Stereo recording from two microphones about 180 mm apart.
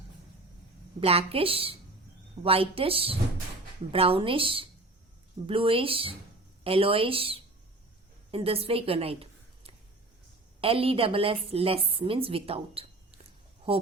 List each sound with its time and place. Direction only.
0.9 s a woman's voice: 30° right (ahead or behind)
10.6 s a woman's voice: 30° right (ahead or behind)